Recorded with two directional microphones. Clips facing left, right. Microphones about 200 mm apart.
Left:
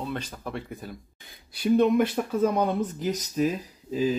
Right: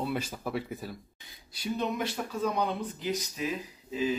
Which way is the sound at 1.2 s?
55° left (ahead or behind).